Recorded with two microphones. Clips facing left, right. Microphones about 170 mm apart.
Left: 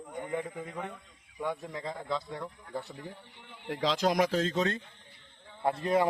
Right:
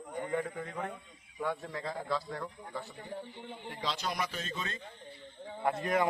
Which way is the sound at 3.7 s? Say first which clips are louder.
Left 9 dB; 90° left.